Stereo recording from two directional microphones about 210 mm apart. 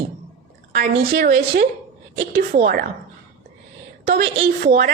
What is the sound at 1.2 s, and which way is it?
A woman's voice, 45° right (ahead or behind).